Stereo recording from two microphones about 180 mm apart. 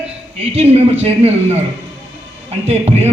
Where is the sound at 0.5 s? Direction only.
35° right (ahead or behind).